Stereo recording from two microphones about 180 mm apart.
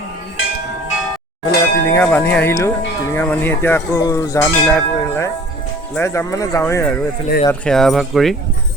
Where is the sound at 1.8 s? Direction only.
10° left (ahead or behind).